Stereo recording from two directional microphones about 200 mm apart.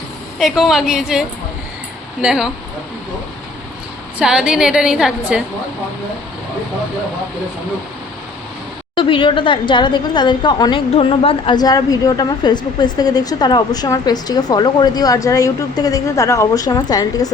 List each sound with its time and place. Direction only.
0.3 s a woman's voice: centre (ahead or behind)
2.2 s a woman's voice: 5° right (ahead or behind)
4.2 s a woman's voice: 5° right (ahead or behind)
9.0 s a woman's voice: 25° left (ahead or behind)